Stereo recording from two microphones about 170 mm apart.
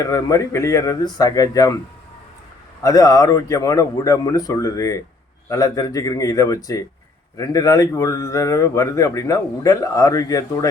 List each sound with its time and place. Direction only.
0.0 s a man's voice: 20° left (ahead or behind)
2.8 s a man's voice: 20° left (ahead or behind)